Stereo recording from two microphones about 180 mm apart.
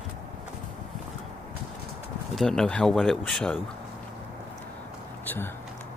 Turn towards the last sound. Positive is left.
turn(degrees=10)  # may be behind; listen again after turning